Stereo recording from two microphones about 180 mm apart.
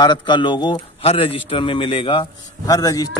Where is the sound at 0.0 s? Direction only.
25° left (ahead or behind).